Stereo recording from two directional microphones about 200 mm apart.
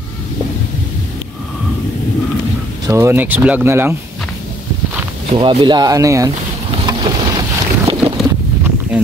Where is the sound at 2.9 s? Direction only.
10° right (ahead or behind).